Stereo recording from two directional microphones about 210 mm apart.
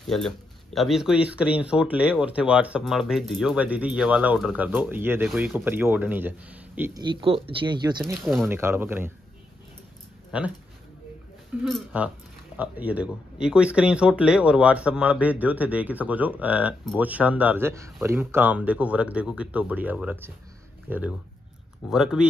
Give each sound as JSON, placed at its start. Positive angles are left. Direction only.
{"t": 0.0, "sound": "speech", "side_deg": 0}
{"t": 7.0, "sound": "speech", "side_deg": -25}
{"t": 10.3, "sound": "speech", "side_deg": -5}
{"t": 11.6, "sound": "speech", "side_deg": -5}